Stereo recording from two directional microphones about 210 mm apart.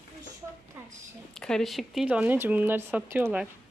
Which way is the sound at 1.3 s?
5° left (ahead or behind).